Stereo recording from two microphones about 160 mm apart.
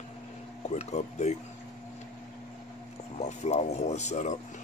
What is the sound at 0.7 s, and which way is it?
Speech, 45° left (ahead or behind).